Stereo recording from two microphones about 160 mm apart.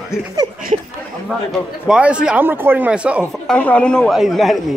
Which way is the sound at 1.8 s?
5° right (ahead or behind).